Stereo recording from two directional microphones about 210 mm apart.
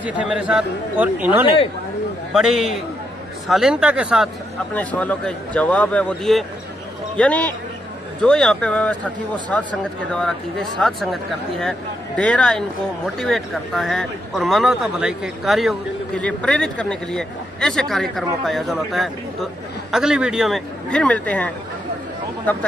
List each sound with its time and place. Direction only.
0.2 s a man's voice: 5° right (ahead or behind)
4.7 s a man's voice: 5° left (ahead or behind)